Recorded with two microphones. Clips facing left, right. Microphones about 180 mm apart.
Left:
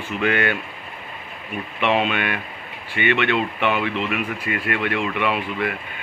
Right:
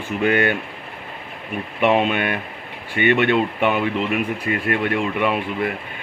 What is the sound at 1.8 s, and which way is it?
Speech, 45° right (ahead or behind).